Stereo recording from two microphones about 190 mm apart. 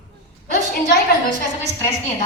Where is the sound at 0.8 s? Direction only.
50° left (ahead or behind).